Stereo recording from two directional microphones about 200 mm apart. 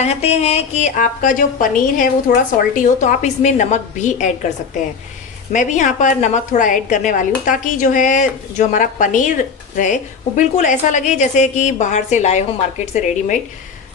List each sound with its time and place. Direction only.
0.0 s a woman's voice: 30° left (ahead or behind)